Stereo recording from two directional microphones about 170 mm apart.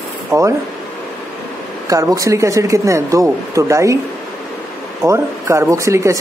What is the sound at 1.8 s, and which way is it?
Speech, 20° right (ahead or behind).